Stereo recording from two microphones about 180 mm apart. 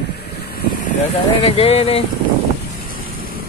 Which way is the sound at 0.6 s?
45° left (ahead or behind).